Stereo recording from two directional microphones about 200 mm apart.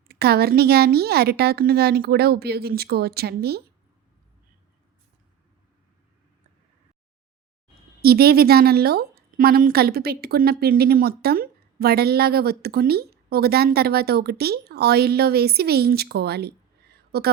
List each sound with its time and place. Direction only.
0.1 s a woman's voice: 50° right (ahead or behind)
8.0 s a woman's voice: 50° right (ahead or behind)
16.9 s a sound: 50° right (ahead or behind)